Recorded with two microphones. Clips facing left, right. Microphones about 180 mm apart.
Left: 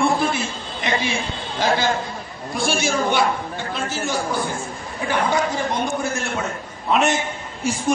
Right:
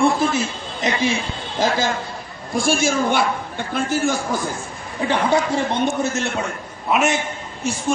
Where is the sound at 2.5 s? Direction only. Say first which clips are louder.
Right 3 dB; 50° right (ahead or behind).